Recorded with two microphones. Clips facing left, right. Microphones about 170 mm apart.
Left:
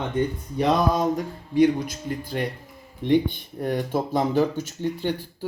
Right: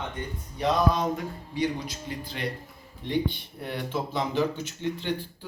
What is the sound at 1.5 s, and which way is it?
Speech, 50° left (ahead or behind).